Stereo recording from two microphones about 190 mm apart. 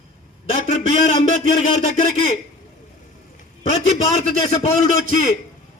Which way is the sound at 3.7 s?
35° left (ahead or behind).